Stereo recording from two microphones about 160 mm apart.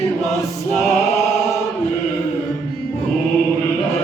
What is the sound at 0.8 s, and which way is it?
Choir, 20° left (ahead or behind).